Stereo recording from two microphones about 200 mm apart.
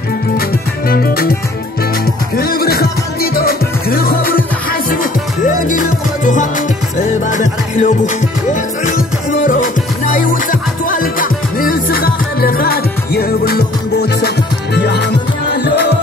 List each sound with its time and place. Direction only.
0.8 s music: 50° left (ahead or behind)
2.3 s music: 50° left (ahead or behind)